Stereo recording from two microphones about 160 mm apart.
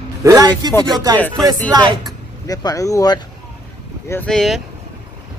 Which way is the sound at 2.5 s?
20° left (ahead or behind).